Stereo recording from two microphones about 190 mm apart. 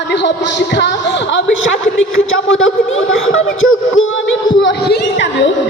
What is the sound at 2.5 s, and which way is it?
Speech, 90° left.